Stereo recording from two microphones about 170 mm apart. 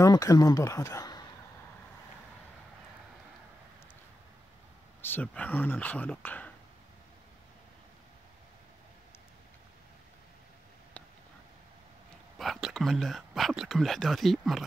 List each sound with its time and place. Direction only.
0.0 s speech: 20° left (ahead or behind)
5.0 s speech: 10° left (ahead or behind)
12.4 s speech: centre (ahead or behind)